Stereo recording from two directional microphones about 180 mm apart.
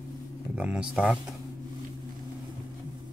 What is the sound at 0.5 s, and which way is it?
Speech, 5° right (ahead or behind).